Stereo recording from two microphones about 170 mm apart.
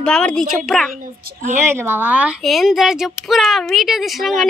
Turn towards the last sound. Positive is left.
turn(degrees=0)  # may be behind; listen again after turning